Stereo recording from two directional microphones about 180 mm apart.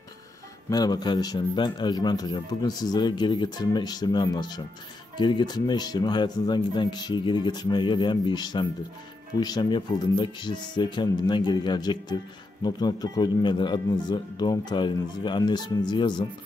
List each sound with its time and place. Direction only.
0.7 s a man's voice: 20° left (ahead or behind)